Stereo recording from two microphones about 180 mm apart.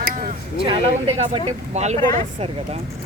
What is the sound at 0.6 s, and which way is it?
Speech, 30° right (ahead or behind).